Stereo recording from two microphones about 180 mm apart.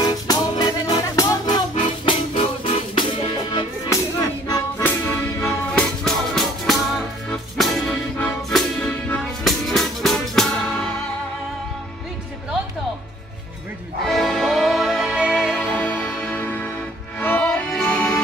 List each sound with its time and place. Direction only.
0.0 s music: 20° left (ahead or behind); by 10.9 s centre (ahead or behind)
14.0 s music: centre (ahead or behind)